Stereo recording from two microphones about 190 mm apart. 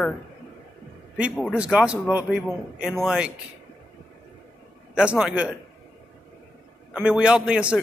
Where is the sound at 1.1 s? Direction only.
5° right (ahead or behind).